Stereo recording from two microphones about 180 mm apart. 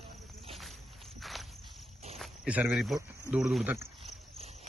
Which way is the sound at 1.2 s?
Centre (ahead or behind).